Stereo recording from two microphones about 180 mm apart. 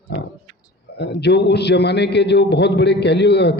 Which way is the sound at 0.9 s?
70° left (ahead or behind).